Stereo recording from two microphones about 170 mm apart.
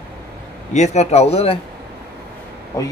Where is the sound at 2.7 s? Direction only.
20° left (ahead or behind).